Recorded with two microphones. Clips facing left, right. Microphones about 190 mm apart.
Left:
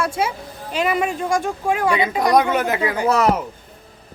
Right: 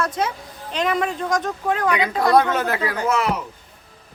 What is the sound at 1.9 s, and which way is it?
Speech, 25° left (ahead or behind).